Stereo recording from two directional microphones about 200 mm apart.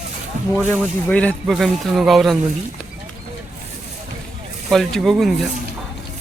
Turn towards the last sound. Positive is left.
turn(degrees=0)  # may be behind; listen again after turning